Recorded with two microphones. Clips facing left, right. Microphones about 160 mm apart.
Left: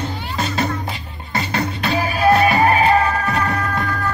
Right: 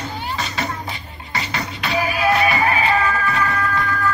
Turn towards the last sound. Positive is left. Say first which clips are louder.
# even
turn(degrees=40)  # may be behind; listen again after turning